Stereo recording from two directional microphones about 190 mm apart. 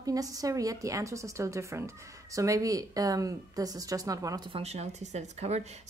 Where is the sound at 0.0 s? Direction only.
20° right (ahead or behind).